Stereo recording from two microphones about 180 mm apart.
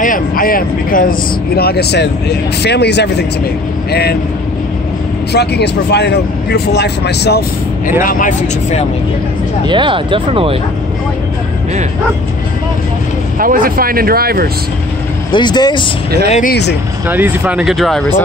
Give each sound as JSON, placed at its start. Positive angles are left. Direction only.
{"t": 0.0, "sound": "speech", "side_deg": 50}
{"t": 5.3, "sound": "speech", "side_deg": 65}
{"t": 8.0, "sound": "speech", "side_deg": 50}
{"t": 9.7, "sound": "speech", "side_deg": -25}
{"t": 13.4, "sound": "speech", "side_deg": -50}
{"t": 15.3, "sound": "speech", "side_deg": 25}
{"t": 16.3, "sound": "speech", "side_deg": 45}
{"t": 17.1, "sound": "speech", "side_deg": -10}